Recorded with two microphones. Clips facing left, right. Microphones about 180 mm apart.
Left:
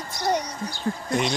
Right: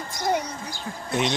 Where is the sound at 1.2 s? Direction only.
5° right (ahead or behind).